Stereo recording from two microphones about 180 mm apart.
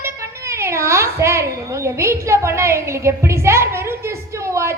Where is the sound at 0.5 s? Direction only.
15° right (ahead or behind).